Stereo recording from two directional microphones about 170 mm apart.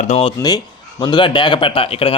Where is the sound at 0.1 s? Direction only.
35° left (ahead or behind).